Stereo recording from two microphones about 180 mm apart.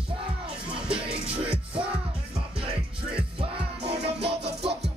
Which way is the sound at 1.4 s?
30° right (ahead or behind).